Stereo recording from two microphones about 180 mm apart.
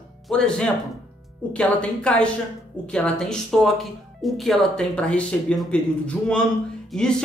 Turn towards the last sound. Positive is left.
turn(degrees=0)  # may be behind; listen again after turning